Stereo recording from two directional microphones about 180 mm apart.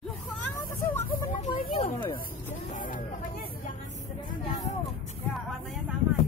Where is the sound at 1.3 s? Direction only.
50° left (ahead or behind).